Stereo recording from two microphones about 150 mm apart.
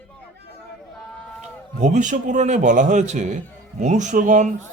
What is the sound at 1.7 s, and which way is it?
A man's voice, 55° right (ahead or behind).